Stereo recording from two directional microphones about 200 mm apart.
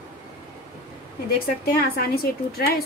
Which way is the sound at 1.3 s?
50° left (ahead or behind).